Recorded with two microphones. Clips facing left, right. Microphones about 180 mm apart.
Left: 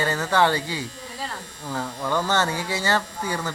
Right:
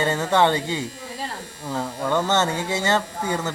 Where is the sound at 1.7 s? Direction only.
10° right (ahead or behind).